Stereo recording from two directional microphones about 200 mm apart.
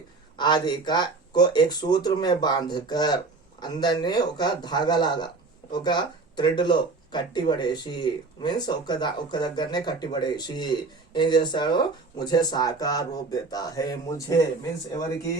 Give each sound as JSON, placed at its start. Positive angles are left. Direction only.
{"t": 0.3, "sound": "speech", "side_deg": 20}